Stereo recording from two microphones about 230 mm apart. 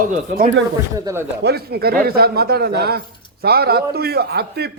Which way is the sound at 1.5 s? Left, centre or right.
Right.